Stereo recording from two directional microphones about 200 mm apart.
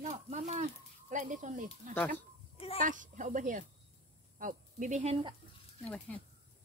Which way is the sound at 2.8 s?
40° right (ahead or behind).